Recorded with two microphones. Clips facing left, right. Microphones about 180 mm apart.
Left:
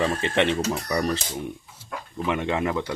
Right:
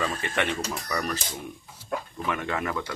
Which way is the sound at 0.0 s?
25° left (ahead or behind).